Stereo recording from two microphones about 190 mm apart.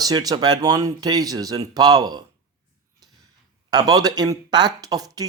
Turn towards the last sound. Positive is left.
turn(degrees=-20)  # may be behind; listen again after turning